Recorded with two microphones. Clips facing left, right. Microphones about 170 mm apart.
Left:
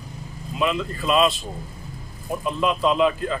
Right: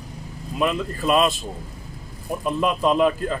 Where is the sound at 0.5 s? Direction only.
45° right (ahead or behind).